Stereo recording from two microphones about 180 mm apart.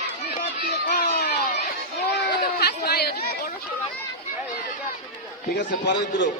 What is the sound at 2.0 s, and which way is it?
Chatter, 60° left (ahead or behind).